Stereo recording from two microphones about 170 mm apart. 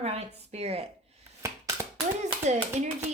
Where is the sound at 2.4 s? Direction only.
40° right (ahead or behind).